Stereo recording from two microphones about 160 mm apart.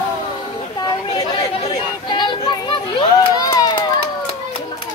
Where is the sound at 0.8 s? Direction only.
30° left (ahead or behind).